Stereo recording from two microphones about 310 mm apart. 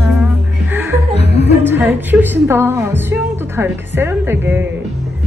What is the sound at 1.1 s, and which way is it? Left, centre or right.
Speech, centre.